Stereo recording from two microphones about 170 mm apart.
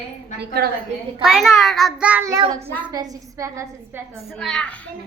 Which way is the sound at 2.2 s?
20° right (ahead or behind).